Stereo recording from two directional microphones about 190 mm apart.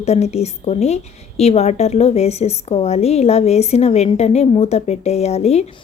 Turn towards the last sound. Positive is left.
turn(degrees=35)  # may be behind; listen again after turning